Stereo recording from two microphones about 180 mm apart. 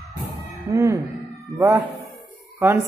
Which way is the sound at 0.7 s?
15° right (ahead or behind).